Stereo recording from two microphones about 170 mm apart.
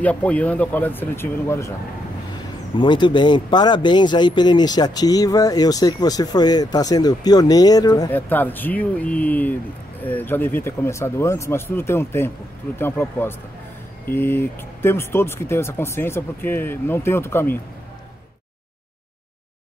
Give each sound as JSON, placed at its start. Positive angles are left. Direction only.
{"t": 0.0, "sound": "speech", "side_deg": 10}
{"t": 2.8, "sound": "speech", "side_deg": 25}
{"t": 8.1, "sound": "speech", "side_deg": 10}